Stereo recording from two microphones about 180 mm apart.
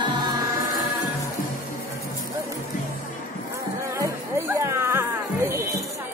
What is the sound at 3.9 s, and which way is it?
Music, 15° right (ahead or behind).